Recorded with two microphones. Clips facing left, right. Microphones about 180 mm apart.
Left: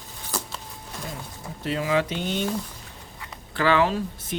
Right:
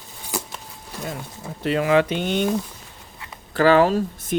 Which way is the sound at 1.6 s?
65° right (ahead or behind).